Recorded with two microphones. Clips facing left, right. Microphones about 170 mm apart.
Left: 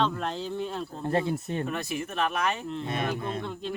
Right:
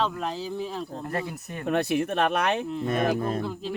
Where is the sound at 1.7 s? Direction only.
60° right (ahead or behind).